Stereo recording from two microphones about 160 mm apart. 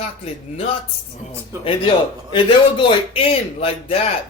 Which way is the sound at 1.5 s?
20° right (ahead or behind).